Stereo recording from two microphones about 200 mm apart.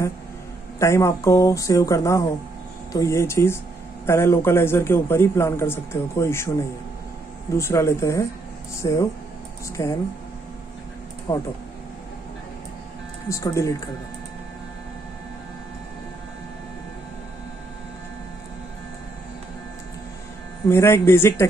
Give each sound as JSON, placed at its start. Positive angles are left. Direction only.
{"t": 0.7, "sound": "a man's voice", "side_deg": 15}
{"t": 7.5, "sound": "a man's voice", "side_deg": 15}
{"t": 11.3, "sound": "a man's voice", "side_deg": 15}
{"t": 13.3, "sound": "a man's voice", "side_deg": 15}
{"t": 20.6, "sound": "a man's voice", "side_deg": 15}